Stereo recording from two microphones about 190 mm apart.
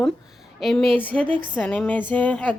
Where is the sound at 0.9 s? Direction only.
10° left (ahead or behind).